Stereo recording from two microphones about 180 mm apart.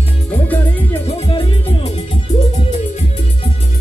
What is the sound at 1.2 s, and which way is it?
Music, 30° left (ahead or behind).